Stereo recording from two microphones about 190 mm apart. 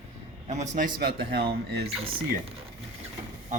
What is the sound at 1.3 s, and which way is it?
Speech, 60° right (ahead or behind).